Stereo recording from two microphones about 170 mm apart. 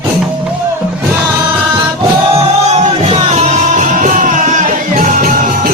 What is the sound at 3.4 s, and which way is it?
Music, 45° right (ahead or behind).